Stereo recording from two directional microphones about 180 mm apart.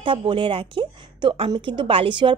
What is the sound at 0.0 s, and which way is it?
A woman's voice, 30° right (ahead or behind).